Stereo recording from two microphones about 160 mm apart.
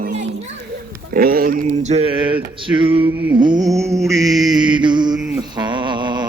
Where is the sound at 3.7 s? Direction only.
20° right (ahead or behind).